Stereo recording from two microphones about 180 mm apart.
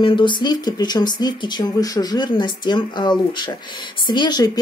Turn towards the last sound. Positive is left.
turn(degrees=20)  # may be behind; listen again after turning